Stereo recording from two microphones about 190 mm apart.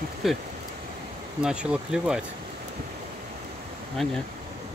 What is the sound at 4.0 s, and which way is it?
Speech, centre (ahead or behind).